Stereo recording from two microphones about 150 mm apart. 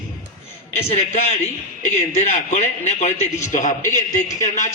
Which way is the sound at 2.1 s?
50° left (ahead or behind).